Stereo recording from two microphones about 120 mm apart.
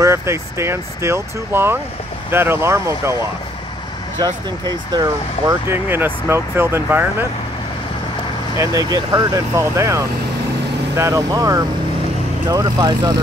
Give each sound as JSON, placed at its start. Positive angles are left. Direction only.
{"t": 0.0, "sound": "speech", "side_deg": -25}
{"t": 4.2, "sound": "speech", "side_deg": -35}
{"t": 5.5, "sound": "speech", "side_deg": -20}
{"t": 8.5, "sound": "speech", "side_deg": -30}